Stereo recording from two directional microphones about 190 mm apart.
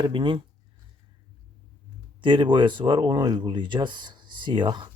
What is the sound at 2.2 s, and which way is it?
Speech, 25° right (ahead or behind).